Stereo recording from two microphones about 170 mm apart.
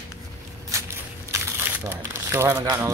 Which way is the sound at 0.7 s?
15° right (ahead or behind).